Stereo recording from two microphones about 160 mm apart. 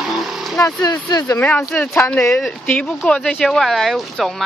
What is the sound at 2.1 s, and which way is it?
Speech, 20° left (ahead or behind).